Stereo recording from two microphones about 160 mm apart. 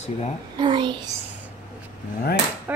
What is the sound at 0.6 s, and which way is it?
Speech, 30° right (ahead or behind).